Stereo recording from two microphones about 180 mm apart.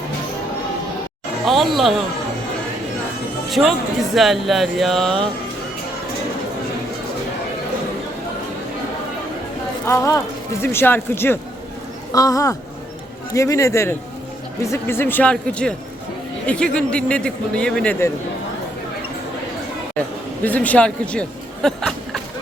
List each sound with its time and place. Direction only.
1.5 s speech: centre (ahead or behind)
3.5 s speech: centre (ahead or behind)
9.8 s speech: 15° left (ahead or behind)
20.4 s speech: 10° left (ahead or behind)